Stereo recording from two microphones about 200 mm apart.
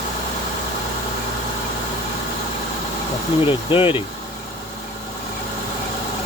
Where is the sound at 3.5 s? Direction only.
25° left (ahead or behind).